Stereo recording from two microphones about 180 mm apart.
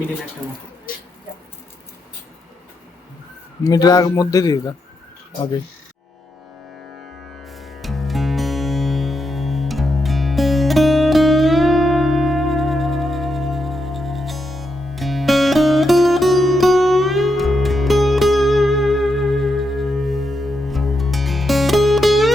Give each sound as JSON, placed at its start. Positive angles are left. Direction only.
{"t": 3.6, "sound": "a man's voice", "side_deg": 20}
{"t": 7.4, "sound": "music", "side_deg": 0}